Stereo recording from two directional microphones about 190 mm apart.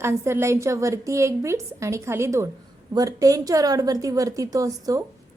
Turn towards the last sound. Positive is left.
turn(degrees=-20)  # may be behind; listen again after turning